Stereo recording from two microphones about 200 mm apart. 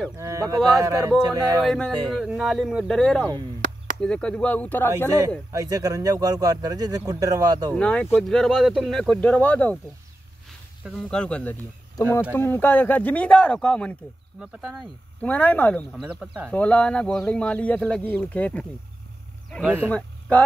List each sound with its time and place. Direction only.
0.2 s speech: 15° right (ahead or behind)
1.6 s speech: 5° left (ahead or behind)
5.5 s speech: 15° right (ahead or behind)
7.7 s speech: 5° left (ahead or behind)
11.1 s speech: 5° left (ahead or behind)
19.6 s speech: 10° right (ahead or behind)
19.9 s speech: 5° left (ahead or behind)